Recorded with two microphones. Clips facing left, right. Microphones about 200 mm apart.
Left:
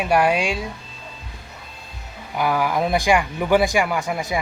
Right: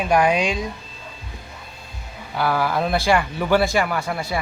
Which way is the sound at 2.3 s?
15° left (ahead or behind).